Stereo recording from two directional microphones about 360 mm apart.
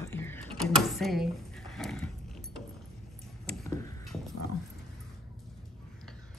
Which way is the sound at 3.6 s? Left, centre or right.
Centre.